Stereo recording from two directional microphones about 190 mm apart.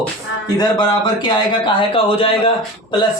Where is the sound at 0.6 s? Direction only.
20° left (ahead or behind).